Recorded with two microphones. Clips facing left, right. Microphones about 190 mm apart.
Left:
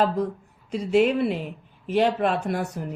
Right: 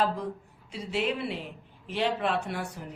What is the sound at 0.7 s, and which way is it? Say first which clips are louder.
Speech: left 10 dB; 45° left (ahead or behind).